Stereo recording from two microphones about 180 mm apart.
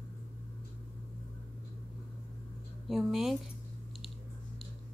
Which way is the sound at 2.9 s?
Centre (ahead or behind).